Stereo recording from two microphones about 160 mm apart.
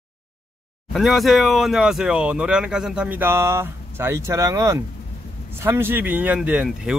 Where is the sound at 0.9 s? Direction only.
Centre (ahead or behind).